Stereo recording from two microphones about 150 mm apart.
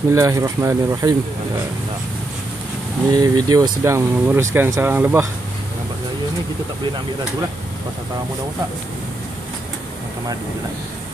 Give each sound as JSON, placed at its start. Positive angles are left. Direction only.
{"t": 0.1, "sound": "speech", "side_deg": -20}
{"t": 3.1, "sound": "speech", "side_deg": -25}